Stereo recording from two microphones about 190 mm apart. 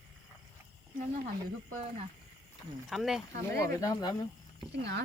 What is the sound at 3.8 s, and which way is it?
Speech, 20° left (ahead or behind).